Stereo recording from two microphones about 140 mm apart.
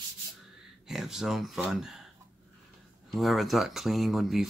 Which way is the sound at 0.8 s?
Centre (ahead or behind).